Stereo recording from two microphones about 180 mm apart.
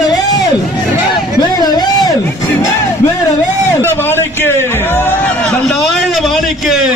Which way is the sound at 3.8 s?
15° left (ahead or behind).